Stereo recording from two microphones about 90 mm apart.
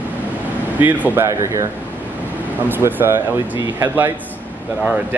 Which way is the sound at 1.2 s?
35° right (ahead or behind).